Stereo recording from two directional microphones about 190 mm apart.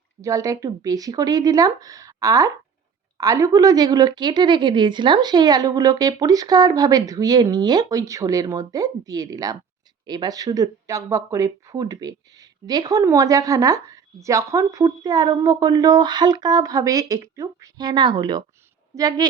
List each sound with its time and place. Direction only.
0.2 s speech: 15° right (ahead or behind)